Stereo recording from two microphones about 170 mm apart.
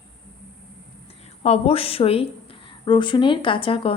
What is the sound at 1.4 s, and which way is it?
A woman's voice, 35° left (ahead or behind).